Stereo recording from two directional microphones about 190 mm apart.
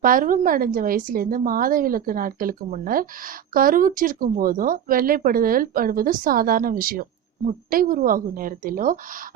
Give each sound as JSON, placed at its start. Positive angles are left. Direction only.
{"t": 0.0, "sound": "speech", "side_deg": -45}